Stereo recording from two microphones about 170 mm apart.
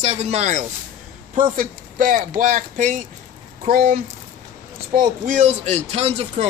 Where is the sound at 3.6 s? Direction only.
60° right (ahead or behind).